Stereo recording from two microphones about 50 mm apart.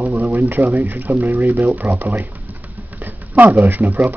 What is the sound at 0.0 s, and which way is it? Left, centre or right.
Pigeon, right.